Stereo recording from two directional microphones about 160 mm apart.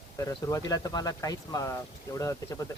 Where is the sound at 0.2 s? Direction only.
20° left (ahead or behind).